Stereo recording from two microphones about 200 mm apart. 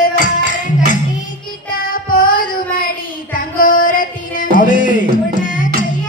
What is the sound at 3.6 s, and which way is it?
Music, 45° left (ahead or behind).